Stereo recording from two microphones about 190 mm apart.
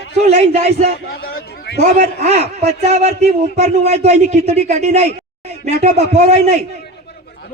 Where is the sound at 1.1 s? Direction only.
55° left (ahead or behind).